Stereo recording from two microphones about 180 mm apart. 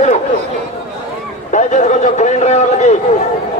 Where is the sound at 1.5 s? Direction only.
40° left (ahead or behind).